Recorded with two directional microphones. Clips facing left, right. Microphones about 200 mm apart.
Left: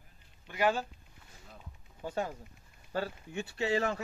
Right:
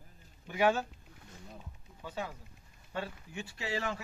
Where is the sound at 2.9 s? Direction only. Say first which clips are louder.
Left 4 dB; 35° left (ahead or behind).